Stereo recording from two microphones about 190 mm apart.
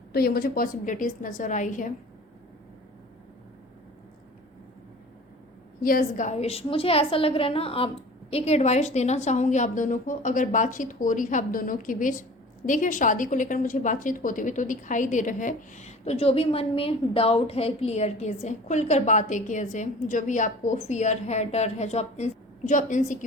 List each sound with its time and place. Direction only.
0.1 s a woman's voice: 55° left (ahead or behind)
5.8 s a woman's voice: 45° left (ahead or behind)